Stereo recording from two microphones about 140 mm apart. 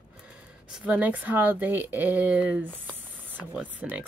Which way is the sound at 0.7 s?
10° right (ahead or behind).